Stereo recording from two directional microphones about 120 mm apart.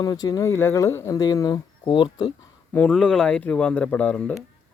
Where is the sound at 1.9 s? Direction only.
45° left (ahead or behind).